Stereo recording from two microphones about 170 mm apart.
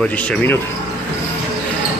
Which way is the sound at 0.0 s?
5° left (ahead or behind).